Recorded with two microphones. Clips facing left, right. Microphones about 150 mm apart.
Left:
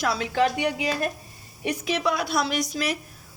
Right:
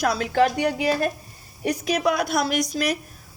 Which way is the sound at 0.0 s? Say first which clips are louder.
Right 3 dB; 45° right (ahead or behind).